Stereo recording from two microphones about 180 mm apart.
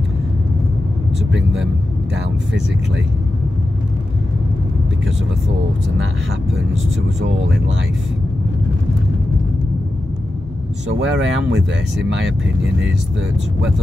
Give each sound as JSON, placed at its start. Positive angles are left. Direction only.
{"t": 10.9, "sound": "speech", "side_deg": -90}